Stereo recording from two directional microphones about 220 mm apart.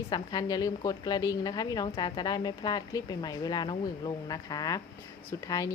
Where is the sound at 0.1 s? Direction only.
20° left (ahead or behind).